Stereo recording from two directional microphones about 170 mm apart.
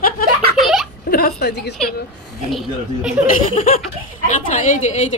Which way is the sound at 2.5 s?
Centre (ahead or behind).